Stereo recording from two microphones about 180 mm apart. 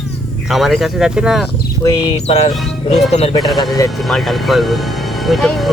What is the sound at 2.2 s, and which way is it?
Music, 35° left (ahead or behind).